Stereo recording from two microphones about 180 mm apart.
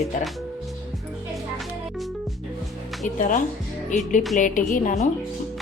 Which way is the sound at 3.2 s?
45° left (ahead or behind).